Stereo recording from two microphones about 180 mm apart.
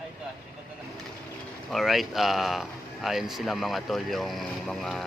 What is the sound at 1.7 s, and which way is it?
Speech, centre (ahead or behind).